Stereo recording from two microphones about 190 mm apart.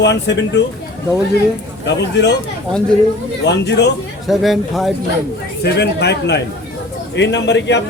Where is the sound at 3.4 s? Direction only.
65° left (ahead or behind).